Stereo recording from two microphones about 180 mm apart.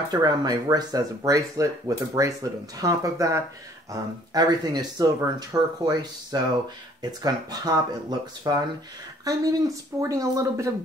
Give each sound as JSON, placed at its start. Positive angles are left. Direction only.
{"t": 0.1, "sound": "speech", "side_deg": -20}